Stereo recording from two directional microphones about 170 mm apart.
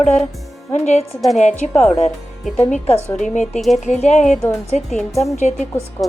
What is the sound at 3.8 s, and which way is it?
Speech, 45° left (ahead or behind).